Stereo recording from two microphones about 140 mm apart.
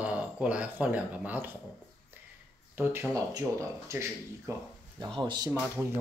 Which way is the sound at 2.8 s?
20° right (ahead or behind).